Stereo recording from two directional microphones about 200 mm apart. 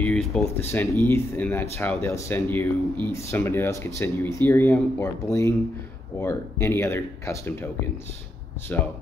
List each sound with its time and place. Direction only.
0.0 s speech: 5° left (ahead or behind)